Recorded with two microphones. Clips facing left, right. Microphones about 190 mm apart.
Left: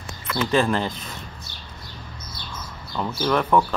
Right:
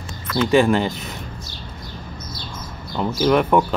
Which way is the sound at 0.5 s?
5° right (ahead or behind).